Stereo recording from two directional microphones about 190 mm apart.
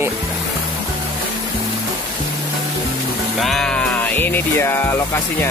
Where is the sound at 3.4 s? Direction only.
Centre (ahead or behind).